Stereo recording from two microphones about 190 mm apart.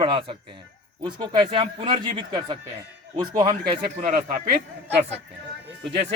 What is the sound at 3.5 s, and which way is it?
Speech, 35° right (ahead or behind).